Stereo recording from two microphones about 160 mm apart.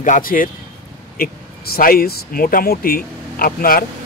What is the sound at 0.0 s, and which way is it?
Speech, 55° left (ahead or behind).